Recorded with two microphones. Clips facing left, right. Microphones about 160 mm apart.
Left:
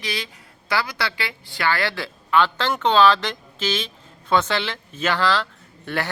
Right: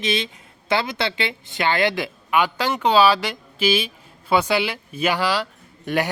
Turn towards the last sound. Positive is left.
turn(degrees=-15)  # may be behind; listen again after turning